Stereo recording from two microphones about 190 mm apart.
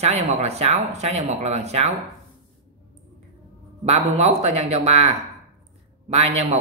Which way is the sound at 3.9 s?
35° right (ahead or behind).